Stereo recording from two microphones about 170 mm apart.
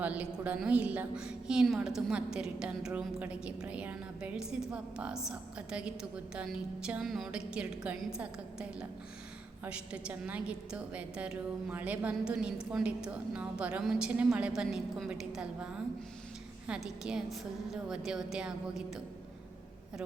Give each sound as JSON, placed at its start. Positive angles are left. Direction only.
{"t": 0.0, "sound": "a woman's voice", "side_deg": -10}